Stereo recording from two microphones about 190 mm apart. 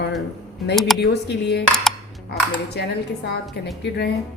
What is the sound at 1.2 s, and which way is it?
Speech, 65° left (ahead or behind).